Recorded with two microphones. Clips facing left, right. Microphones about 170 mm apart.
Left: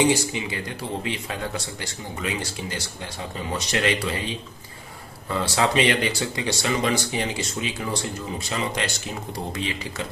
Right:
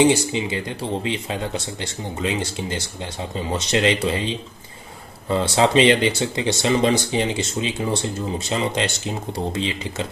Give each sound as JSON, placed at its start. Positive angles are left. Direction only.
{"t": 0.0, "sound": "speech", "side_deg": -25}